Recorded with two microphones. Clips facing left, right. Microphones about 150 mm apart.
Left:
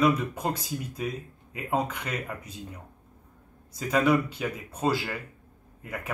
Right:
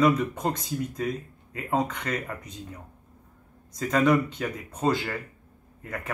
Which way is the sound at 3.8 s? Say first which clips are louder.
Right 1 dB; 5° left (ahead or behind).